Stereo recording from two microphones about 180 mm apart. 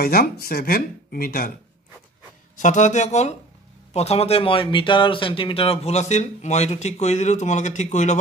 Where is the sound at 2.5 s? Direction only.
45° left (ahead or behind).